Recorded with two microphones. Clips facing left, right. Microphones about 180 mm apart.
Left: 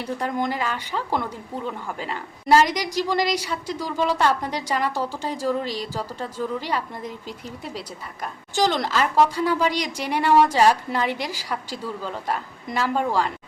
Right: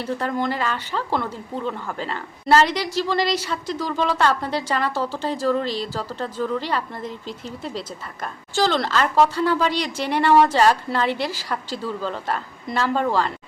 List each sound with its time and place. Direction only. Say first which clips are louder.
0.0 s speech: right 1 dB; 15° left (ahead or behind)